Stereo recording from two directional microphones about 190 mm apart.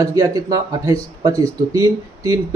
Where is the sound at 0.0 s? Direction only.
20° right (ahead or behind).